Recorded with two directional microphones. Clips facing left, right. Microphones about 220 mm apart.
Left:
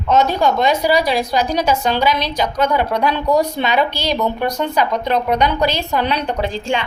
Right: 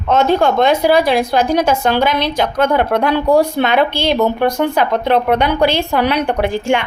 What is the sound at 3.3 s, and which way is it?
Speech, 10° right (ahead or behind).